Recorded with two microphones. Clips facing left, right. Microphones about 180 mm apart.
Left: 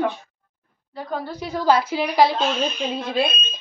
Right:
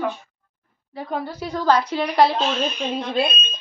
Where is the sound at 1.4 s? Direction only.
10° left (ahead or behind).